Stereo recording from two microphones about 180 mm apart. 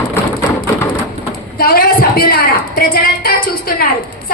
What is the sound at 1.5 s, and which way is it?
A woman's voice, 55° left (ahead or behind).